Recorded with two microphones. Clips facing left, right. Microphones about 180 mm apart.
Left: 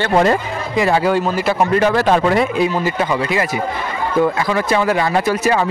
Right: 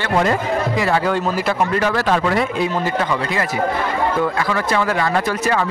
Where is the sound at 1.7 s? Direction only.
20° left (ahead or behind).